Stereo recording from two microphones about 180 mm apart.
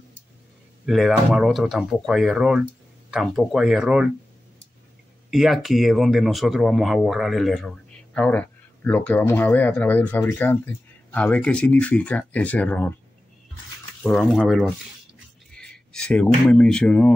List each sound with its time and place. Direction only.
0.8 s speech: centre (ahead or behind)
5.3 s speech: centre (ahead or behind)
14.0 s speech: centre (ahead or behind)